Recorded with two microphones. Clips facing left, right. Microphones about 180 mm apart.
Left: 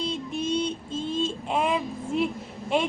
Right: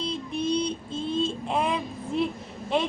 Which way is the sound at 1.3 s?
5° left (ahead or behind).